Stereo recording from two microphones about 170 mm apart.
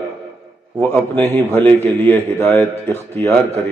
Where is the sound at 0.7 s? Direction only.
10° left (ahead or behind).